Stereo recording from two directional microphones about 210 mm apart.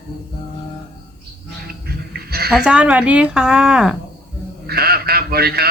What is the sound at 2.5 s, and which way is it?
Speech, 5° right (ahead or behind).